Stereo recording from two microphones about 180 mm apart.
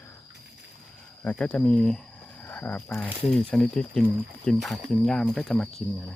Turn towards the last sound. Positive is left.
turn(degrees=5)  # may be behind; listen again after turning